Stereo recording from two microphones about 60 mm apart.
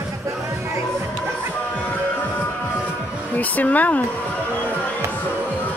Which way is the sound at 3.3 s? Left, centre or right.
Left.